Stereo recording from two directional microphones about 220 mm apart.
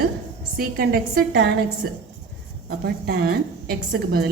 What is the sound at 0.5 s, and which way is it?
A woman's voice, 45° right (ahead or behind).